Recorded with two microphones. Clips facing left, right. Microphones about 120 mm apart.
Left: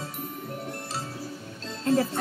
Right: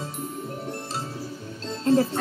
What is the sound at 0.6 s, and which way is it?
Music, 30° right (ahead or behind).